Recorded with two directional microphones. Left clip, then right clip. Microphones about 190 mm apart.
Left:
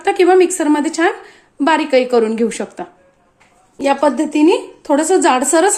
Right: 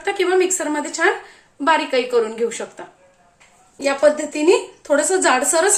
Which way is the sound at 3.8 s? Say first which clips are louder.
Left 2 dB; 40° left (ahead or behind).